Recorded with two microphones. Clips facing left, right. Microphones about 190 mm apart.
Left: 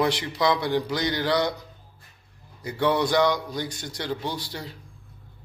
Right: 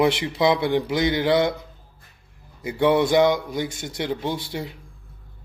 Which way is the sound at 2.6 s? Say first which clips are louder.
Right 4 dB; 20° right (ahead or behind).